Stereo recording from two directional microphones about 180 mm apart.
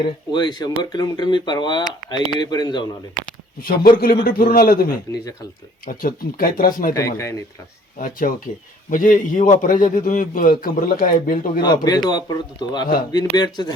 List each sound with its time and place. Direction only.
0.0 s speech: 25° left (ahead or behind)
3.6 s a man's voice: 55° left (ahead or behind)
6.9 s speech: 15° left (ahead or behind)
7.9 s a man's voice: 50° left (ahead or behind)
11.6 s speech: 25° left (ahead or behind)